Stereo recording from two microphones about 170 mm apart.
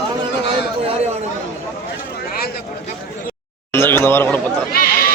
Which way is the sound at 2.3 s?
60° left (ahead or behind).